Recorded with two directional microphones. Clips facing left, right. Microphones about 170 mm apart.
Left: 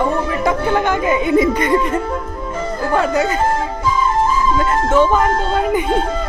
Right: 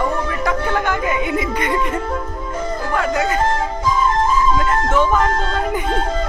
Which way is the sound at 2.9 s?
25° left (ahead or behind).